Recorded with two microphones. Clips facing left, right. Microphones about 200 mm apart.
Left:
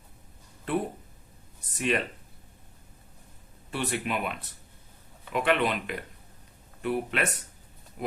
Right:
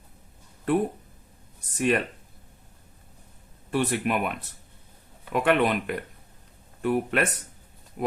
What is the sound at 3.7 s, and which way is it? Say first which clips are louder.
Speech: right 5 dB; 50° right (ahead or behind).